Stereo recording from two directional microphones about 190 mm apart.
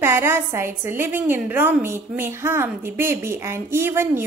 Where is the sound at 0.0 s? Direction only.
15° right (ahead or behind).